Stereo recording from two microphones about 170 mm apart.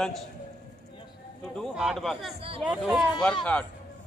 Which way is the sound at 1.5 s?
Centre (ahead or behind).